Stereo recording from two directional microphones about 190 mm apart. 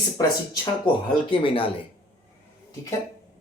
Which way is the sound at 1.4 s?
30° left (ahead or behind).